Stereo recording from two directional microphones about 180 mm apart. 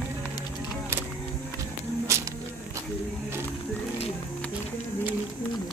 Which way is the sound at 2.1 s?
15° right (ahead or behind).